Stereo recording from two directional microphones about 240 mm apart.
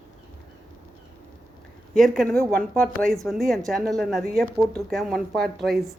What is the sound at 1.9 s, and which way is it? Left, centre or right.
Speech, centre.